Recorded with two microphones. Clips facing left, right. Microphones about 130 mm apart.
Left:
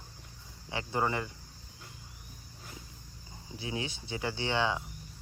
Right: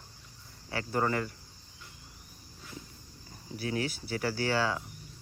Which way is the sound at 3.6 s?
20° left (ahead or behind).